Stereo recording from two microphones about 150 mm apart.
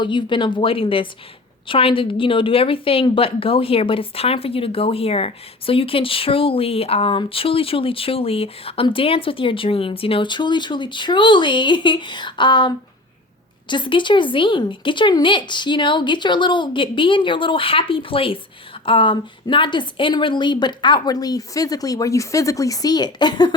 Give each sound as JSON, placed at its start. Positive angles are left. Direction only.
{"t": 0.0, "sound": "a woman's voice", "side_deg": 30}